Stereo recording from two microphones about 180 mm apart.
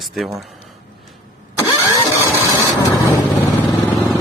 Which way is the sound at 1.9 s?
15° left (ahead or behind).